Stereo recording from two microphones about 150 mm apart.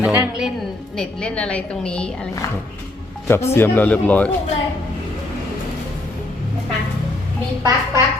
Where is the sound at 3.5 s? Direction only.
15° left (ahead or behind).